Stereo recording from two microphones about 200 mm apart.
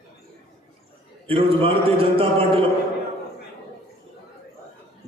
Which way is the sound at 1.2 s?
25° right (ahead or behind).